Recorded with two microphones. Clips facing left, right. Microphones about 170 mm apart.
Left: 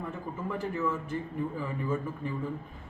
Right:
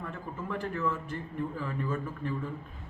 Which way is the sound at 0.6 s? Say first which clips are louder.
Left 1 dB; 10° left (ahead or behind).